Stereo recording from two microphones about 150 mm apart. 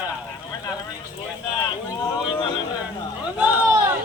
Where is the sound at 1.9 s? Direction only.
25° left (ahead or behind).